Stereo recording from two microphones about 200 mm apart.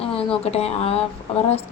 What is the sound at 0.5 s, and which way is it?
Speech, 30° left (ahead or behind).